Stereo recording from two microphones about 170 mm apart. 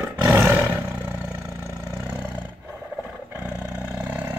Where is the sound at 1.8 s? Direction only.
10° right (ahead or behind).